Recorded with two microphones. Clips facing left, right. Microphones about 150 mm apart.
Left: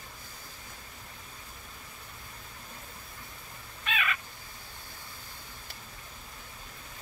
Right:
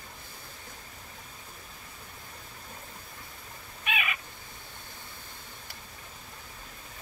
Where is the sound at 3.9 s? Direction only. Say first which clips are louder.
Even; 15° right (ahead or behind).